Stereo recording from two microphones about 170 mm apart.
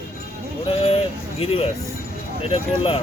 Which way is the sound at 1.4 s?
35° left (ahead or behind).